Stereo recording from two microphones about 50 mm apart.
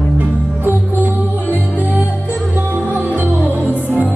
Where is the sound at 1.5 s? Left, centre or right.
Right.